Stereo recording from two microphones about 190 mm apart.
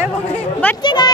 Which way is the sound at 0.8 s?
20° left (ahead or behind).